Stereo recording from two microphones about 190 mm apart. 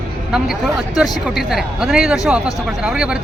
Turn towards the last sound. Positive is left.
turn(degrees=-5)  # may be behind; listen again after turning